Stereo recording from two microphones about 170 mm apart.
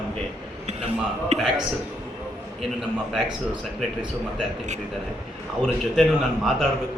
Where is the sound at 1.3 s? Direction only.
40° right (ahead or behind).